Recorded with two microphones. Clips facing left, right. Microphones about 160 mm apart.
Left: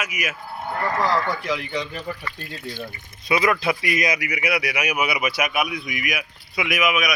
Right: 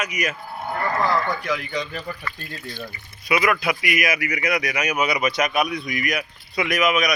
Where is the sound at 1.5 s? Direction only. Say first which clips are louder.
Even; 15° left (ahead or behind).